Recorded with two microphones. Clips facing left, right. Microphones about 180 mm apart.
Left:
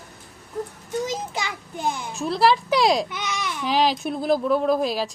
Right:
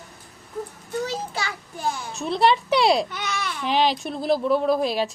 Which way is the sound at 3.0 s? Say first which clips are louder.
Even; 15° left (ahead or behind).